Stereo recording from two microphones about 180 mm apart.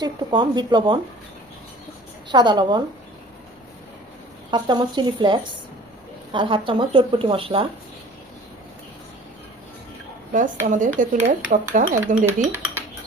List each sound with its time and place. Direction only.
0.0 s speech: 25° right (ahead or behind)
2.3 s speech: 25° right (ahead or behind)
4.5 s speech: 25° right (ahead or behind)
10.7 s a woman's voice: 45° right (ahead or behind)
12.5 s speech: 15° right (ahead or behind)